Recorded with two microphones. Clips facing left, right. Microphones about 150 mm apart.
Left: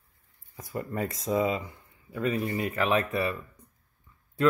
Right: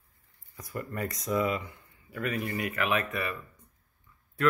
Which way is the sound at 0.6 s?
25° left (ahead or behind).